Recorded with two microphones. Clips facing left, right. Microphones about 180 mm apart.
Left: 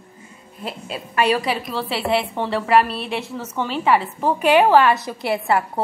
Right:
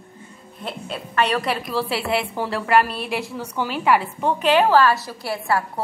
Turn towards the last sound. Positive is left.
turn(degrees=20)  # may be behind; listen again after turning